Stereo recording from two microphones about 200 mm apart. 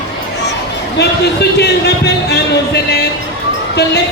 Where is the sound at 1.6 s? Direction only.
55° left (ahead or behind).